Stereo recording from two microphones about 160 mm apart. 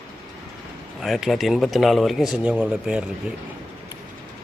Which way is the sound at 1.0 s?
Centre (ahead or behind).